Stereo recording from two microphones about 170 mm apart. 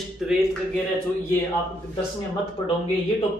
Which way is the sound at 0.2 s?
Centre (ahead or behind).